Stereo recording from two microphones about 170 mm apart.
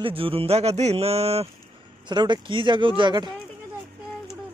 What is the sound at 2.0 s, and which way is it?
Speech, 25° right (ahead or behind).